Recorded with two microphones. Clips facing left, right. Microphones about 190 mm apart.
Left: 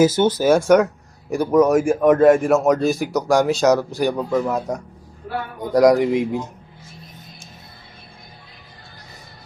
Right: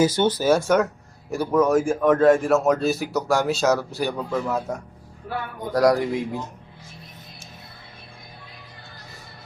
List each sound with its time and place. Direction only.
0.2 s speech: 10° left (ahead or behind)
2.6 s speech: 5° right (ahead or behind)
3.0 s speech: 15° left (ahead or behind)